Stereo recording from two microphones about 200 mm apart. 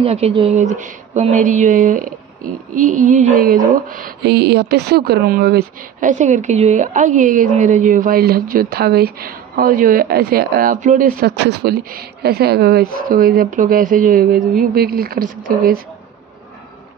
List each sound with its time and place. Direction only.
0.0 s speech: 30° right (ahead or behind); by 15.8 s 45° right (ahead or behind)